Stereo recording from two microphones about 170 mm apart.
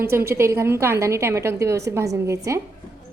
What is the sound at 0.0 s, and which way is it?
A woman's voice, 15° right (ahead or behind).